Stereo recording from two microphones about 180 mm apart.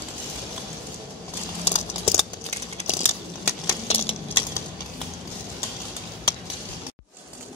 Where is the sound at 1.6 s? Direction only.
35° left (ahead or behind).